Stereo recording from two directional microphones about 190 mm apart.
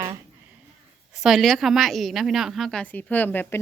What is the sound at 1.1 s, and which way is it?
A woman's voice, centre (ahead or behind).